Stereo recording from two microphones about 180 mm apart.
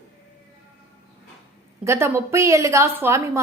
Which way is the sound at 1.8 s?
15° right (ahead or behind).